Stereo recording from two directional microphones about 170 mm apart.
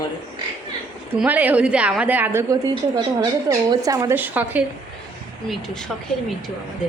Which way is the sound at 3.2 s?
25° right (ahead or behind).